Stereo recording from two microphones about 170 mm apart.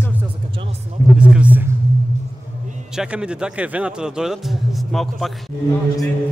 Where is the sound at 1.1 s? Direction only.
5° right (ahead or behind).